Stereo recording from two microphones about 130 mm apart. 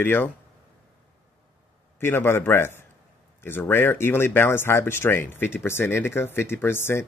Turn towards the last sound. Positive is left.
turn(degrees=20)  # may be behind; listen again after turning